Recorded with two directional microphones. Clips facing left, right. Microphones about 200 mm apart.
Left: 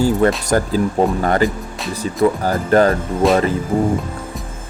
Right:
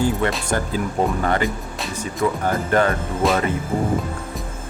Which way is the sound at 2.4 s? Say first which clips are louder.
Left 3 dB; 35° left (ahead or behind).